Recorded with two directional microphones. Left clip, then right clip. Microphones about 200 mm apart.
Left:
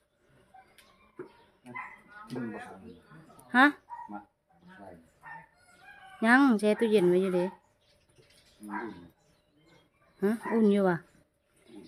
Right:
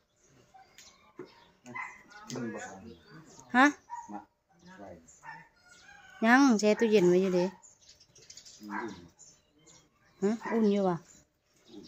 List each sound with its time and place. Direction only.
3.5 s speech: 5° left (ahead or behind)
6.1 s speech: 5° left (ahead or behind)
8.6 s dog: 5° left (ahead or behind)
10.2 s speech: 10° left (ahead or behind)